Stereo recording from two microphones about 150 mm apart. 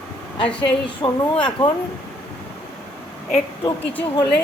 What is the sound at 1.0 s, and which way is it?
Speech, 35° left (ahead or behind).